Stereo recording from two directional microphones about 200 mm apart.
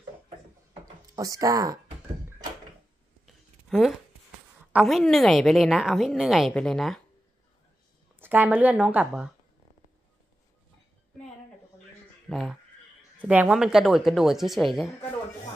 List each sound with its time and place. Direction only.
1.1 s speech: 15° right (ahead or behind)
3.3 s a sound: centre (ahead or behind)
4.7 s a woman's voice: centre (ahead or behind)
8.2 s speech: 10° right (ahead or behind)
12.3 s a woman's voice: centre (ahead or behind)